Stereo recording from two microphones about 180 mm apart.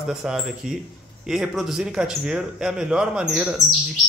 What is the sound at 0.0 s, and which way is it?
Speech, 5° right (ahead or behind).